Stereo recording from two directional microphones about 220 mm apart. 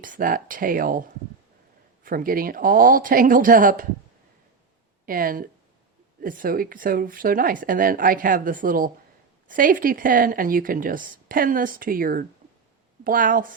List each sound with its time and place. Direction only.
0.0 s speech: 35° right (ahead or behind)
5.0 s speech: 40° right (ahead or behind)